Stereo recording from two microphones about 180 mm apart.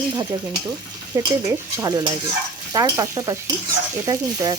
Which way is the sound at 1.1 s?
15° right (ahead or behind).